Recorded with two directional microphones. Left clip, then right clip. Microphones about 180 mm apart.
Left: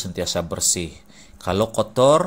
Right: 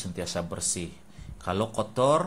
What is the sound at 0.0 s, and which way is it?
Speech, 25° left (ahead or behind).